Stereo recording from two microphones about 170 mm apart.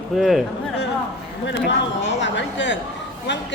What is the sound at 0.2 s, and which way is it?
Speech, centre (ahead or behind).